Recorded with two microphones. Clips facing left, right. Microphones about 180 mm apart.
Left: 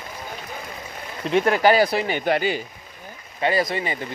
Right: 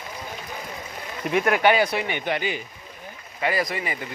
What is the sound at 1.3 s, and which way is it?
Speech, 30° left (ahead or behind).